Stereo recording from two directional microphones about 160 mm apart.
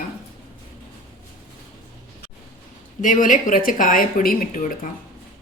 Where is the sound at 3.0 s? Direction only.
55° left (ahead or behind).